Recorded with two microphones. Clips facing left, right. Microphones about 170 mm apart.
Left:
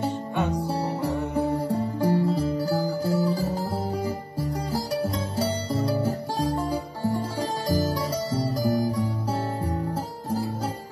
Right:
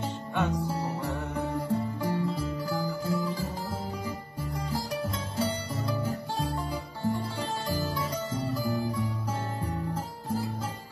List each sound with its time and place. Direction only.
0.7 s music: 30° left (ahead or behind)